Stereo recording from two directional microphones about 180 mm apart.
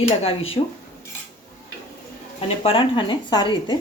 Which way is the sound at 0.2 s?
30° left (ahead or behind).